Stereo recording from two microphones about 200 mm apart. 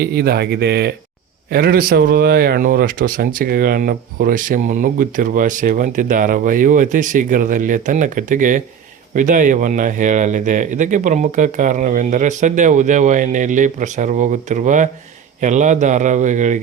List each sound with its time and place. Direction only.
0.0 s speech: 50° right (ahead or behind)